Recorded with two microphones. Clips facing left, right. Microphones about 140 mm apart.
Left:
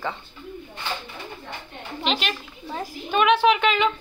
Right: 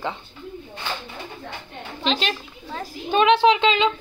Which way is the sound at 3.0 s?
25° right (ahead or behind).